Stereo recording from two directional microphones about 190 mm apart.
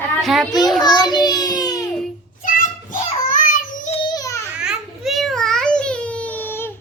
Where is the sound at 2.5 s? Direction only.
45° left (ahead or behind).